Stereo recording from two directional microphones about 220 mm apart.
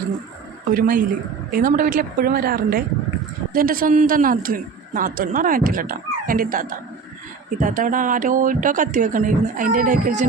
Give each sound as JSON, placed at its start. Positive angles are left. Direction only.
{"t": 0.7, "sound": "speech", "side_deg": -40}